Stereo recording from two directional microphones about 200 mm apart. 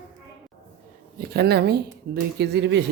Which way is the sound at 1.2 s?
55° right (ahead or behind).